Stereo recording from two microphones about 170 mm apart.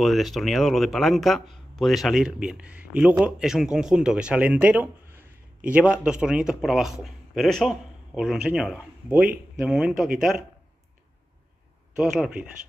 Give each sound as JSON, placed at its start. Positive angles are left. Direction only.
{"t": 0.0, "sound": "speech", "side_deg": 0}
{"t": 12.0, "sound": "speech", "side_deg": -5}